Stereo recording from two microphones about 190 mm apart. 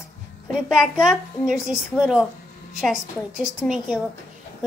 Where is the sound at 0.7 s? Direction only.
Centre (ahead or behind).